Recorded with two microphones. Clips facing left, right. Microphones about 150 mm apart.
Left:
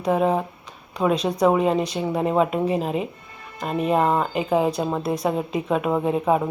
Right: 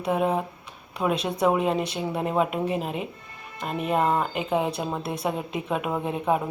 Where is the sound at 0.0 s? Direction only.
Centre (ahead or behind).